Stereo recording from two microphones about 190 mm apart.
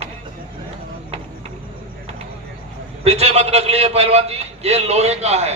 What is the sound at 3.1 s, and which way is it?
A man's voice, 35° right (ahead or behind).